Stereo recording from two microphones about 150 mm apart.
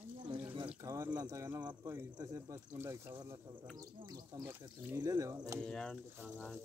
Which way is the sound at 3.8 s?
25° right (ahead or behind).